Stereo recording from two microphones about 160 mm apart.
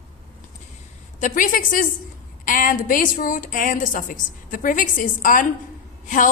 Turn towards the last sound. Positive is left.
turn(degrees=55)  # may be behind; listen again after turning